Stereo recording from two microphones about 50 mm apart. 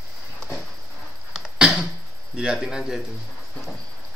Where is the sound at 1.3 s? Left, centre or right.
Centre.